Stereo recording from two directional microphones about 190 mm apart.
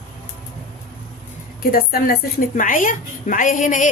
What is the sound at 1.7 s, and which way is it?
A woman's voice, 50° left (ahead or behind).